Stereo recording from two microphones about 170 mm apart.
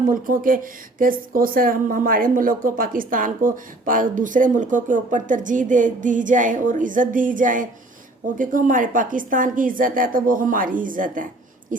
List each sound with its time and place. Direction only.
0.1 s speech: 55° right (ahead or behind)